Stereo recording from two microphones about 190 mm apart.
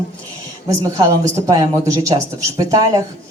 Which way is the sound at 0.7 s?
15° right (ahead or behind).